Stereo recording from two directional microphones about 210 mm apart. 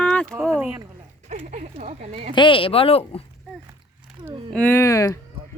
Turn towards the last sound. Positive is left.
turn(degrees=15)  # may be behind; listen again after turning